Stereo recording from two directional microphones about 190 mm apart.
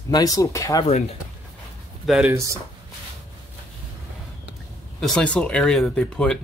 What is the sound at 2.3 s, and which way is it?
Speech, 15° right (ahead or behind).